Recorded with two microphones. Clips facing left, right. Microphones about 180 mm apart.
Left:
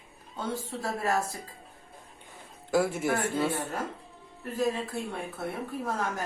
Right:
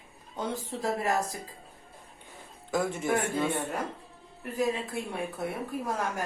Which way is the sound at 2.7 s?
10° left (ahead or behind).